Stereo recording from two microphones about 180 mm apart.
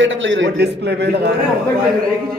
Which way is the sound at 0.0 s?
90° right.